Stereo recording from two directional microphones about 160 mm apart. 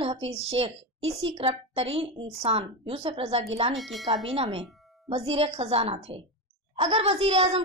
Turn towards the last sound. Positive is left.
turn(degrees=-40)  # may be behind; listen again after turning